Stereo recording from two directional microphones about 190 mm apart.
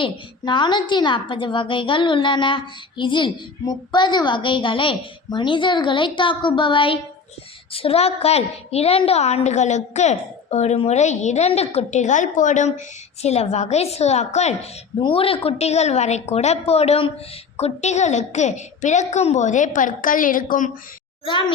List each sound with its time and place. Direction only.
0.0 s a woman's voice: 25° left (ahead or behind); by 20.7 s 45° left (ahead or behind)
21.2 s a woman's voice: 25° left (ahead or behind)